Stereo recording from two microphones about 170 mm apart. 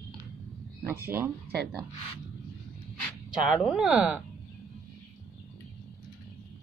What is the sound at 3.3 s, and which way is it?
Speech, centre (ahead or behind).